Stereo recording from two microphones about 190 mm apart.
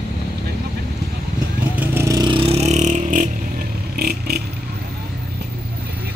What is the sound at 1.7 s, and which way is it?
Vehicle, 10° right (ahead or behind).